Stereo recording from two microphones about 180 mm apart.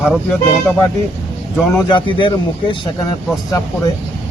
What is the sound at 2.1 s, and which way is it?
Speech, 25° left (ahead or behind).